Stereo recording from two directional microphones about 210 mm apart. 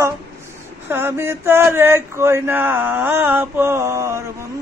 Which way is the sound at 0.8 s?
10° right (ahead or behind).